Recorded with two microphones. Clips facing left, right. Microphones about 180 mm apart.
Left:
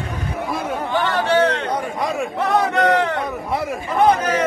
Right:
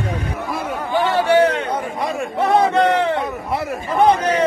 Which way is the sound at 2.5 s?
20° right (ahead or behind).